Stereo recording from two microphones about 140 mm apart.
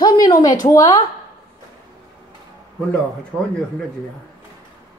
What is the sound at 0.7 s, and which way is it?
Speech, 25° left (ahead or behind).